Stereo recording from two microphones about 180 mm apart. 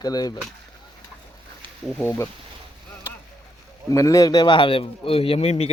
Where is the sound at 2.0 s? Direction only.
10° left (ahead or behind).